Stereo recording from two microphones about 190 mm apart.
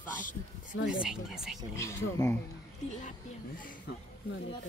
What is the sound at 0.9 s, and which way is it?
Speech, 5° right (ahead or behind).